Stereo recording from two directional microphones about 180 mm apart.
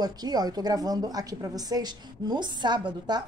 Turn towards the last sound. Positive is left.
turn(degrees=-25)  # may be behind; listen again after turning